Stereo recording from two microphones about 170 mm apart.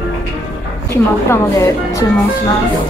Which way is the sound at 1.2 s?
20° left (ahead or behind).